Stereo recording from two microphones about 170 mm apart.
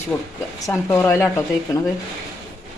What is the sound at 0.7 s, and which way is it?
Speech, 15° left (ahead or behind).